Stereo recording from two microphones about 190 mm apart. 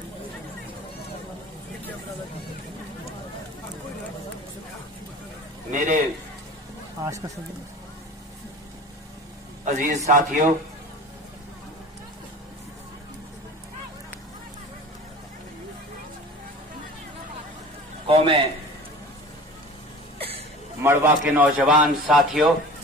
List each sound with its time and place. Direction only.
5.7 s speech: 40° right (ahead or behind)
7.0 s speech: 15° right (ahead or behind)
9.7 s a man's voice: 40° right (ahead or behind)
18.0 s a man's voice: 30° right (ahead or behind)
20.2 s a sound: 30° right (ahead or behind)
20.8 s a man's voice: 10° right (ahead or behind)